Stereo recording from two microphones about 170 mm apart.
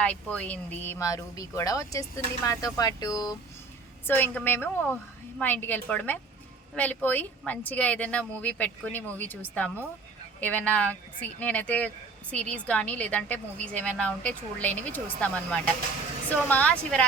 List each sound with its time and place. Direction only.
0.0 s speech: 10° left (ahead or behind)